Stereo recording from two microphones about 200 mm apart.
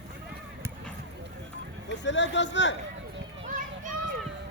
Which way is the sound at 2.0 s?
65° left (ahead or behind).